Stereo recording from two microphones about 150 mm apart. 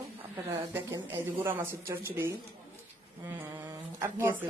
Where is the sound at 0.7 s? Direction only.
15° right (ahead or behind).